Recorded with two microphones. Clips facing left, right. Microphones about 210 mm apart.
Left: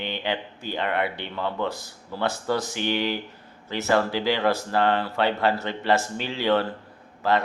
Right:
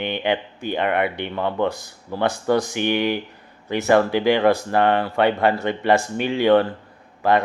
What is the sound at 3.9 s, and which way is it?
Speech, 55° right (ahead or behind).